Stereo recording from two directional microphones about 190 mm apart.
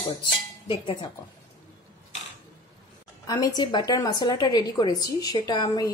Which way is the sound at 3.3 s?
20° left (ahead or behind).